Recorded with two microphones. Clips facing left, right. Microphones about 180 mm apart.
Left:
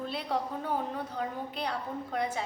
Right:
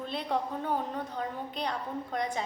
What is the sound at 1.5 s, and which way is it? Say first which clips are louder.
Speech: right 1 dB; 10° left (ahead or behind).